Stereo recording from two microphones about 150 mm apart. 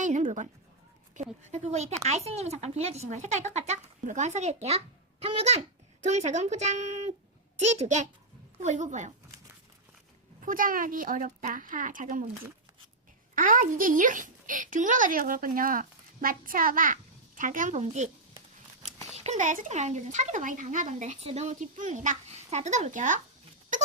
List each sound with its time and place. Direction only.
0.0 s a sound: 55° right (ahead or behind)
1.1 s speech: 50° right (ahead or behind)
10.4 s speech: 65° right (ahead or behind)
13.3 s speech: 60° right (ahead or behind)
19.1 s speech: 50° right (ahead or behind)